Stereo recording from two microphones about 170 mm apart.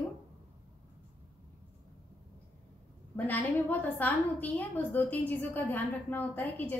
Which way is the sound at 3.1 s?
10° left (ahead or behind).